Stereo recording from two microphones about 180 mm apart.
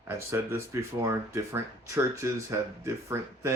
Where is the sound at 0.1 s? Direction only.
15° right (ahead or behind).